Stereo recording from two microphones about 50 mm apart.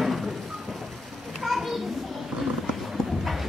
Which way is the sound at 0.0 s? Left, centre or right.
Centre.